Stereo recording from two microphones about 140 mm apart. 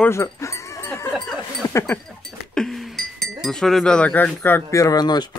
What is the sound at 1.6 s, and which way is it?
Sheep, 15° left (ahead or behind).